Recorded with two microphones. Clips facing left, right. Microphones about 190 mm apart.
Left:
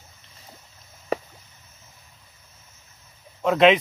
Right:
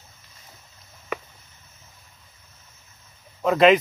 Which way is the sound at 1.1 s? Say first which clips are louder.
Left 5 dB; 35° left (ahead or behind).